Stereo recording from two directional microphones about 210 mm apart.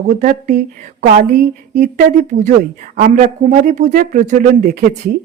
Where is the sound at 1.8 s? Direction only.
35° right (ahead or behind).